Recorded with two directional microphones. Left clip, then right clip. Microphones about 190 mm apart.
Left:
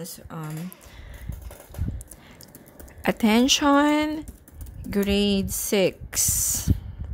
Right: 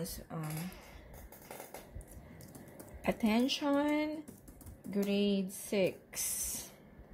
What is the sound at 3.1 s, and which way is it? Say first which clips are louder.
A woman's voice: left 12 dB; 35° left (ahead or behind).